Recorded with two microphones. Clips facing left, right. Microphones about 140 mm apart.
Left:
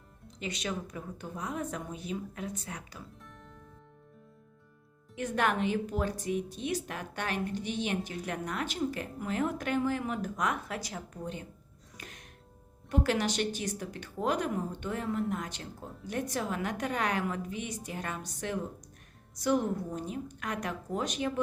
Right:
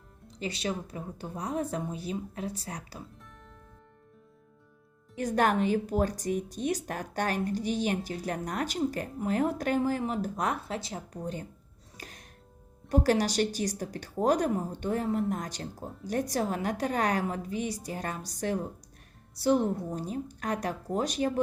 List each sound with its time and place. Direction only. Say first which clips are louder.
0.3 s a woman's voice: right 3 dB; 35° right (ahead or behind)
5.1 s a woman's voice: right 4 dB; 40° right (ahead or behind)
11.9 s music: right 2 dB; 35° right (ahead or behind)
12.9 s a woman's voice: right 4 dB; 40° right (ahead or behind)